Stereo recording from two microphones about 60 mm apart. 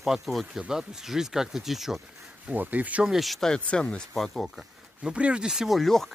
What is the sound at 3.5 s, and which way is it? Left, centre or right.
Speech, centre.